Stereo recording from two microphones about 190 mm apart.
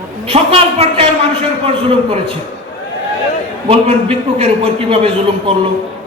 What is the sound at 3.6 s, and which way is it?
A man's voice, 30° right (ahead or behind).